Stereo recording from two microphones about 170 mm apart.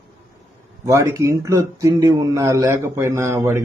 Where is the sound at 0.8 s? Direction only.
20° right (ahead or behind).